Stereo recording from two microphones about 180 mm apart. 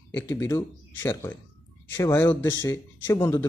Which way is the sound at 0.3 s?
15° left (ahead or behind).